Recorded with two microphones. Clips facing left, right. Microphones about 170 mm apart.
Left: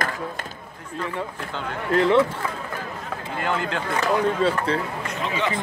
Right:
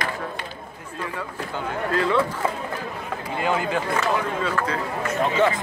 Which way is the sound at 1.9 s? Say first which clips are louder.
Left 5 dB; 20° left (ahead or behind).